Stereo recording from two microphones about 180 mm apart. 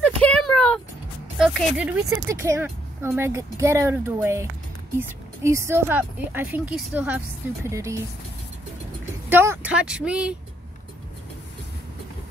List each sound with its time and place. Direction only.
0.0 s a sound: 5° left (ahead or behind)
1.4 s speech: 10° right (ahead or behind)
9.3 s speech: 10° right (ahead or behind)